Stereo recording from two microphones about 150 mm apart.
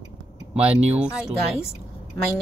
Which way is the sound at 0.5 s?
10° right (ahead or behind).